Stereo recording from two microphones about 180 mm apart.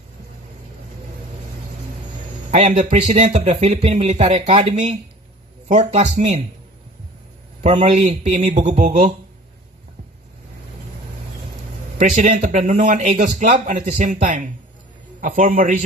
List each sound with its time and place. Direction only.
2.5 s speech: 40° right (ahead or behind)
5.7 s speech: 35° right (ahead or behind)
7.6 s speech: 35° right (ahead or behind)
8.6 s a man's voice: 45° right (ahead or behind)
12.2 s a man's voice: 45° right (ahead or behind)